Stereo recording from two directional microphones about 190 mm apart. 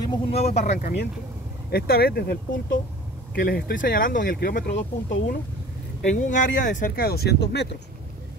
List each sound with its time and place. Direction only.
0.3 s speech: 35° left (ahead or behind)
1.7 s speech: 55° left (ahead or behind)
4.7 s speech: 70° left (ahead or behind)
6.1 s speech: 40° left (ahead or behind); by 7.6 s 60° left (ahead or behind)